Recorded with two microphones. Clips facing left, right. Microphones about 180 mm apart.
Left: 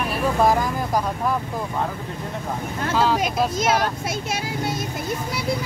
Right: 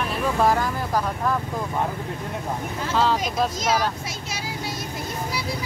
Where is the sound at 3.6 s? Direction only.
55° left (ahead or behind).